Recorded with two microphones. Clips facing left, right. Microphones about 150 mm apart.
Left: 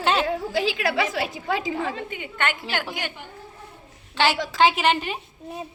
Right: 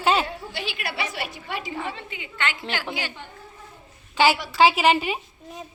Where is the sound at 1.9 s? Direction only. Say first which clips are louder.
Left 4 dB; 50° left (ahead or behind).